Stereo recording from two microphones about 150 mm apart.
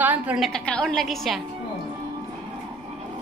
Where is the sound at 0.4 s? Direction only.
5° left (ahead or behind).